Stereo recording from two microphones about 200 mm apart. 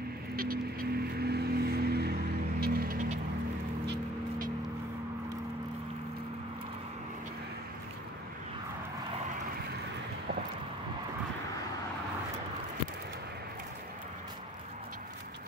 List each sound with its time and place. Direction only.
0.4 s vehicle: 45° right (ahead or behind)
2.6 s music: 45° right (ahead or behind)
3.8 s honk: 55° right (ahead or behind)